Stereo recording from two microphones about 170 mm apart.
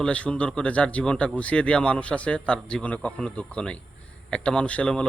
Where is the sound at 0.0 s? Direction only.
5° left (ahead or behind).